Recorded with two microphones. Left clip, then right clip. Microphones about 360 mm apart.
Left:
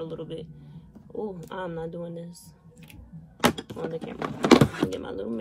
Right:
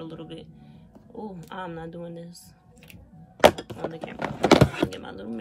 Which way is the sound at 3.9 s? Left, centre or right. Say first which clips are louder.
Even; centre.